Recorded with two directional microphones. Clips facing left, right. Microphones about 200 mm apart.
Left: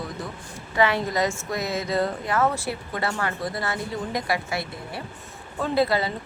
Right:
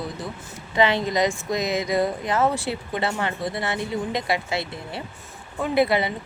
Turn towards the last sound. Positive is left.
turn(degrees=-20)  # may be behind; listen again after turning